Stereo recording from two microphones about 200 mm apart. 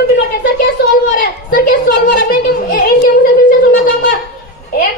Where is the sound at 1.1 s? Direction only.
45° left (ahead or behind).